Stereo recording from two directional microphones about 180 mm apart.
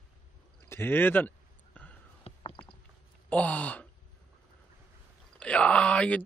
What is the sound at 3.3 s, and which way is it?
Speech, 10° left (ahead or behind).